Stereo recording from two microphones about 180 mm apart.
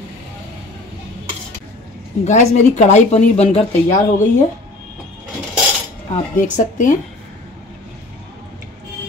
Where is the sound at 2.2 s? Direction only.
40° left (ahead or behind).